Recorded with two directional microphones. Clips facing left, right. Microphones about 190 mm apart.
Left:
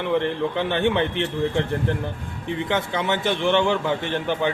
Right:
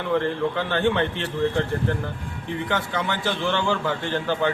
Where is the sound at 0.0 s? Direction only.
20° left (ahead or behind).